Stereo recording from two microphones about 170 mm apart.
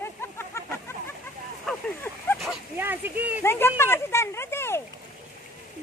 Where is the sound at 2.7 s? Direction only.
10° right (ahead or behind).